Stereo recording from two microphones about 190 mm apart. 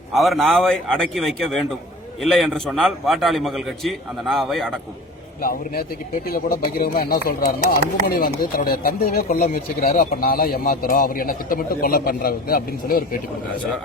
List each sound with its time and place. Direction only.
0.1 s a man's voice: centre (ahead or behind)
5.4 s speech: 50° left (ahead or behind)